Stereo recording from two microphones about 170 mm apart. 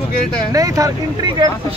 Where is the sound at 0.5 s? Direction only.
20° right (ahead or behind).